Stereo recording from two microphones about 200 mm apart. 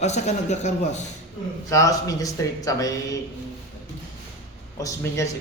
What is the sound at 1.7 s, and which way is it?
A man's voice, 15° left (ahead or behind).